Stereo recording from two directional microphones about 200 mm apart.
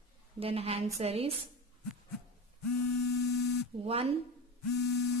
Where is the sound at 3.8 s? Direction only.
30° right (ahead or behind).